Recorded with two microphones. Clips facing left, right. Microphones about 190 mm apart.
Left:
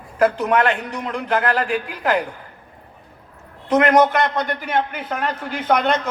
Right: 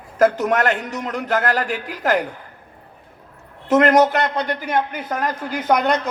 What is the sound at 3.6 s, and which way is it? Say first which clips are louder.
Speech: right 1 dB; 45° right (ahead or behind).